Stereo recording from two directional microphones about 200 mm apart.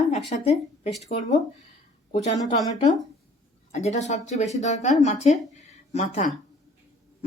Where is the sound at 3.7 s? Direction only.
35° left (ahead or behind).